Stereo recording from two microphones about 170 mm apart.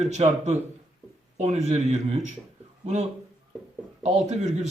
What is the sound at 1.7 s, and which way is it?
A man's voice, 40° right (ahead or behind).